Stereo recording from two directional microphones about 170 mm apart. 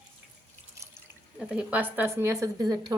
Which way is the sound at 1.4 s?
5° right (ahead or behind).